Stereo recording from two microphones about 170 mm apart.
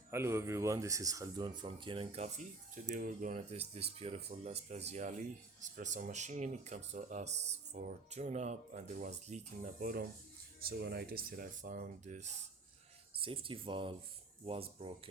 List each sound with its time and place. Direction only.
0.1 s speech: 15° right (ahead or behind)
1.6 s speech: 30° right (ahead or behind)
13.1 s speech: 30° right (ahead or behind)